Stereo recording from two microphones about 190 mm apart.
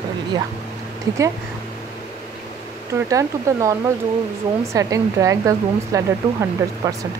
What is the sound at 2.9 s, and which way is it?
Speech, 15° right (ahead or behind).